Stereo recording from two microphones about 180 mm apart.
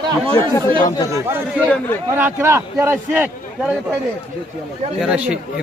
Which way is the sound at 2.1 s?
15° right (ahead or behind).